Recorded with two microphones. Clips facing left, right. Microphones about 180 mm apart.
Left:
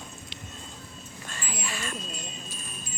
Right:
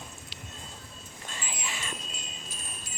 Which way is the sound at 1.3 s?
20° right (ahead or behind).